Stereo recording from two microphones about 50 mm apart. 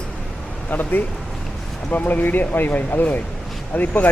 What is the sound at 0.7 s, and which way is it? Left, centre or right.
Speech, left.